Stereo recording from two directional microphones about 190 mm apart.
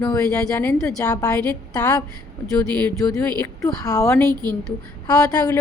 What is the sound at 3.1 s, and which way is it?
Speech, 10° left (ahead or behind).